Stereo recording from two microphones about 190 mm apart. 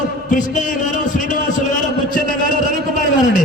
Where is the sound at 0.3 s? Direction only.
45° left (ahead or behind).